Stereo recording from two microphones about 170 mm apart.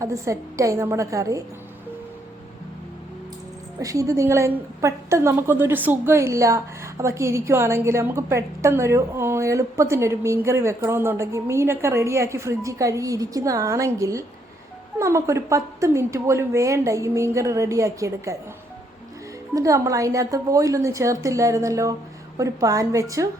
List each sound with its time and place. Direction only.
0.0 s a woman's voice: 20° right (ahead or behind)
3.8 s a woman's voice: 20° right (ahead or behind)
19.5 s a woman's voice: 20° right (ahead or behind)